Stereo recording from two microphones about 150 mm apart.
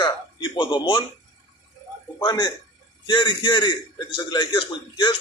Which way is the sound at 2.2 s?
25° left (ahead or behind).